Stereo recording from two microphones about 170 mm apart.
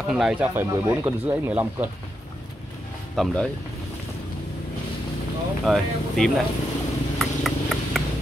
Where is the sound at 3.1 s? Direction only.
5° left (ahead or behind).